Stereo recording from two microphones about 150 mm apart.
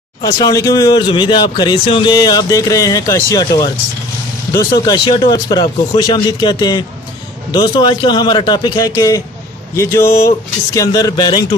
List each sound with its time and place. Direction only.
0.2 s speech: 25° left (ahead or behind)